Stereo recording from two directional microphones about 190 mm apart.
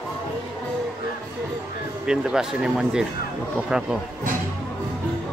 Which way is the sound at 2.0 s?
5° right (ahead or behind).